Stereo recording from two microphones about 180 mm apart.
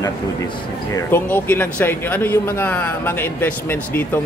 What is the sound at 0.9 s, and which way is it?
A man's voice, 10° left (ahead or behind).